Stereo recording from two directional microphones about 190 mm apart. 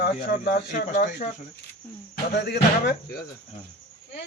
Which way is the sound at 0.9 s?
40° left (ahead or behind).